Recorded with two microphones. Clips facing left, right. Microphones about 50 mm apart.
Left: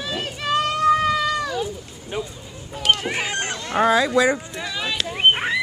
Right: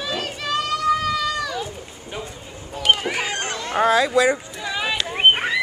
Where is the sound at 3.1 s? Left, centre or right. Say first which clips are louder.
Even; centre.